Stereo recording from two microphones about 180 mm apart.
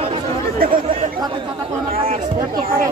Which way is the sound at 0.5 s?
50° right (ahead or behind).